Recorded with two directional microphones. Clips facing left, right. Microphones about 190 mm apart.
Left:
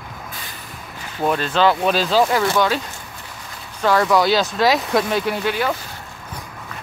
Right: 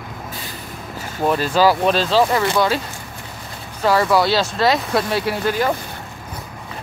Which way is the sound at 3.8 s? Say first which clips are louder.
Even; 5° right (ahead or behind).